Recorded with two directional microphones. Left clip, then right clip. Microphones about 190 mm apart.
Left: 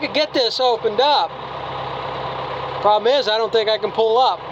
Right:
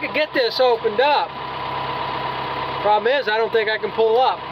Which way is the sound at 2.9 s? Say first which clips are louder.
Left 2 dB; 15° left (ahead or behind).